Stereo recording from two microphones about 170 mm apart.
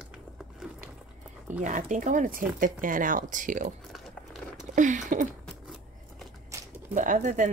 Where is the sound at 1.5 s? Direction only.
45° right (ahead or behind).